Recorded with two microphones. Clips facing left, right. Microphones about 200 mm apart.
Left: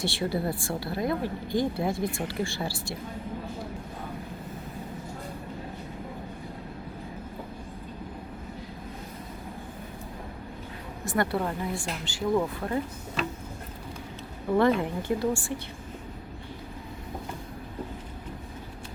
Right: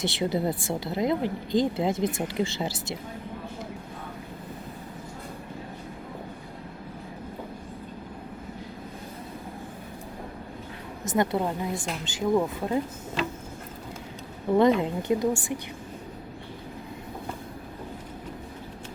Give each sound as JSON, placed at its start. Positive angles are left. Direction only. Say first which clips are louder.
{"t": 0.0, "sound": "speech", "louder": "right 2 dB", "side_deg": -20}
{"t": 11.0, "sound": "speech", "louder": "right 2 dB", "side_deg": -20}
{"t": 14.5, "sound": "speech", "louder": "right 2 dB", "side_deg": -20}